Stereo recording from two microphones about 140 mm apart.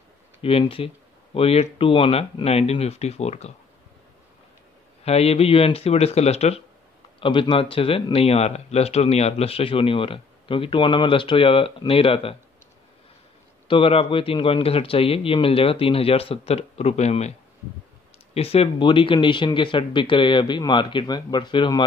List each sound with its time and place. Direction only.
0.4 s speech: 40° left (ahead or behind)
5.0 s speech: 45° left (ahead or behind)
7.2 s speech: 35° left (ahead or behind)
13.7 s speech: 40° left (ahead or behind)